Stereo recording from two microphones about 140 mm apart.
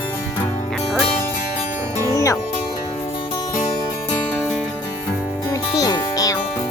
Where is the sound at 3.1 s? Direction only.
35° left (ahead or behind).